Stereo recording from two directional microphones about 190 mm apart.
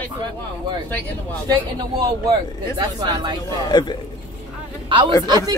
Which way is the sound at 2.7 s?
20° right (ahead or behind).